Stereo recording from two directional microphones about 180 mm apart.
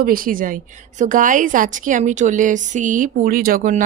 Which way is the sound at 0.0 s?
50° right (ahead or behind).